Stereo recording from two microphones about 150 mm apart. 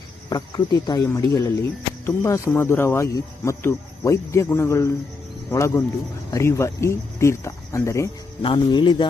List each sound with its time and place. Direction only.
0.3 s speech: 25° left (ahead or behind)
8.4 s speech: 30° left (ahead or behind)